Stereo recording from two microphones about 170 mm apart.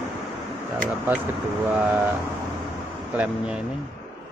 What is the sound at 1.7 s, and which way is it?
Speech, 10° right (ahead or behind).